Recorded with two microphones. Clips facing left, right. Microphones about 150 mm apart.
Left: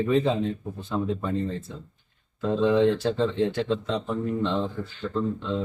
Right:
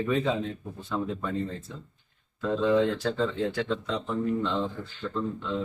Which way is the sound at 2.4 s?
25° left (ahead or behind).